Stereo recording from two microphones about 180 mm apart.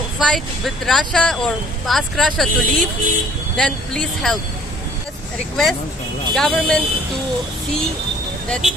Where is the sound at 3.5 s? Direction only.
5° left (ahead or behind).